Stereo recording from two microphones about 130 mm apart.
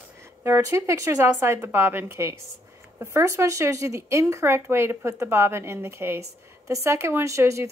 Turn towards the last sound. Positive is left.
turn(degrees=-20)  # may be behind; listen again after turning